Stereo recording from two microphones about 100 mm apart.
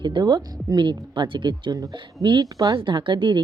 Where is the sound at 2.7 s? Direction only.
55° right (ahead or behind).